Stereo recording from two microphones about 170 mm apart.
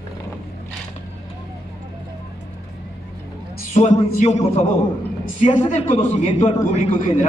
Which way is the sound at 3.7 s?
45° left (ahead or behind).